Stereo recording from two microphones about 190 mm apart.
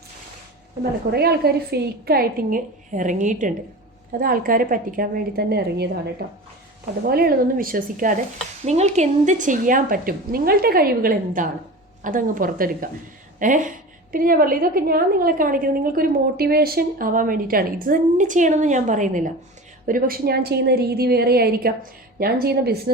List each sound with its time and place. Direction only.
1.1 s a woman's voice: 55° right (ahead or behind)